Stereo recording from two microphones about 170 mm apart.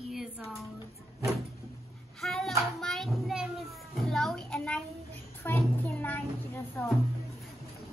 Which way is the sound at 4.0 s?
Centre (ahead or behind).